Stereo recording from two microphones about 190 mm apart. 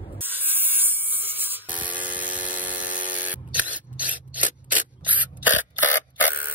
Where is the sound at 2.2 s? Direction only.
45° left (ahead or behind).